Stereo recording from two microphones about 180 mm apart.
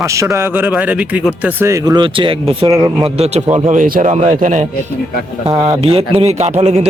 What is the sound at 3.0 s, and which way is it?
A man's voice, 35° right (ahead or behind).